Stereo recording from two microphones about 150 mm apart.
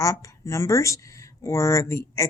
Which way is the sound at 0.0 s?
20° left (ahead or behind).